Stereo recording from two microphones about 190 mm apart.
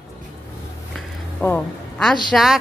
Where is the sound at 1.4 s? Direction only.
5° left (ahead or behind).